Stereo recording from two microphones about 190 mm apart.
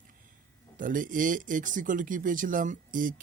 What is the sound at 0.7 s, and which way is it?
Speech, 45° right (ahead or behind).